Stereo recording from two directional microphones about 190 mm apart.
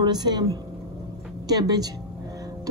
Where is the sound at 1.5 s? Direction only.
20° right (ahead or behind).